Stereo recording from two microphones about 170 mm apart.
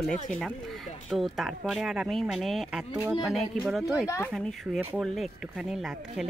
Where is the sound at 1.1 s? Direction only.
Centre (ahead or behind).